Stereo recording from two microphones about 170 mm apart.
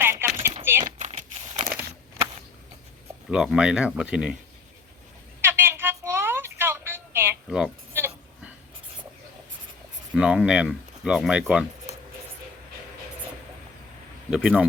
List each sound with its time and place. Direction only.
0.0 s a sound: 15° right (ahead or behind)
0.6 s typing: 15° right (ahead or behind)
0.9 s crumpling: 45° right (ahead or behind)
3.2 s speech: 5° right (ahead or behind)
5.4 s a sound: 15° right (ahead or behind)
10.2 s speech: 5° right (ahead or behind)
14.3 s speech: 5° right (ahead or behind)